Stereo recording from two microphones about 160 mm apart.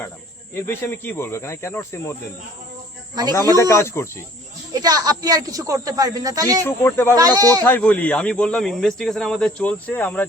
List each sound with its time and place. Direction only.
0.5 s speech: 15° left (ahead or behind)
3.6 s speech: 20° left (ahead or behind)
4.7 s speech: 25° right (ahead or behind)
6.7 s speech: 15° left (ahead or behind)
7.2 s speech: 25° right (ahead or behind)
7.6 s speech: 10° left (ahead or behind)